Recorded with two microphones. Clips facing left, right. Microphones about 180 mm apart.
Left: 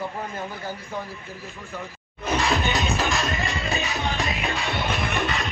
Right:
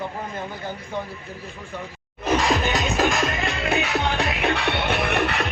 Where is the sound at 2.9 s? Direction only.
55° right (ahead or behind).